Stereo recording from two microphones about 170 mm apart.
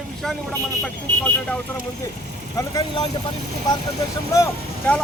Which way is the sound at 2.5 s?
20° left (ahead or behind).